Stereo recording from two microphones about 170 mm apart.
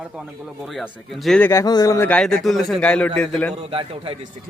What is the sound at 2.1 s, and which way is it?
A man's voice, 5° left (ahead or behind).